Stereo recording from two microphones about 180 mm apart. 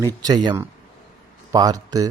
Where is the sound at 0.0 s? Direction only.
20° right (ahead or behind).